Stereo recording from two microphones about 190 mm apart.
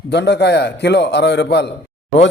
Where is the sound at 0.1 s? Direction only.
60° left (ahead or behind).